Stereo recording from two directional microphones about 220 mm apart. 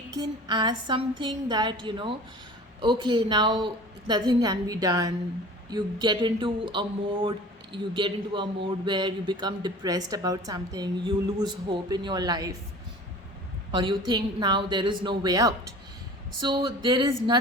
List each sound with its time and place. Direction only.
0.2 s speech: 20° right (ahead or behind)
13.7 s a woman's voice: 20° right (ahead or behind)